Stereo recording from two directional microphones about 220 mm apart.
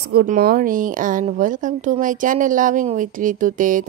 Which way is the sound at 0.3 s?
40° right (ahead or behind).